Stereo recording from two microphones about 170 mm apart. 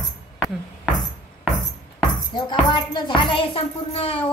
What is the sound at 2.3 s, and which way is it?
Speech, 25° left (ahead or behind).